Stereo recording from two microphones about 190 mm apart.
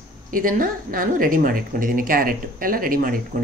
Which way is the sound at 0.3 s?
45° right (ahead or behind).